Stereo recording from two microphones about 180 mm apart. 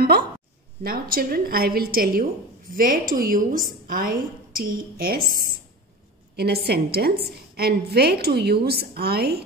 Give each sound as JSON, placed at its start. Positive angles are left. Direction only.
{"t": 0.8, "sound": "a woman's voice", "side_deg": -55}